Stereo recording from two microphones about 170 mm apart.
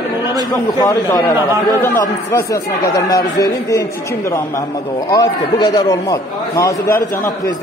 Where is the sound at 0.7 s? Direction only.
20° left (ahead or behind).